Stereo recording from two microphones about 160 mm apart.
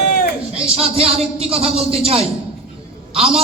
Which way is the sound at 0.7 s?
40° right (ahead or behind).